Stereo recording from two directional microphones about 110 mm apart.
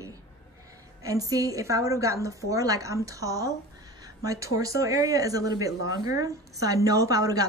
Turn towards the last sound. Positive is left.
turn(degrees=-30)  # may be behind; listen again after turning